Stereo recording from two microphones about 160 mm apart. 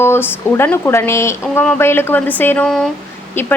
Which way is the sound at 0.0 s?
15° left (ahead or behind).